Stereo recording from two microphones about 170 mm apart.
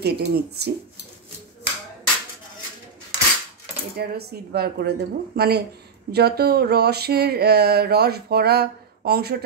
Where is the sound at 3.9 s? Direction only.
65° right (ahead or behind).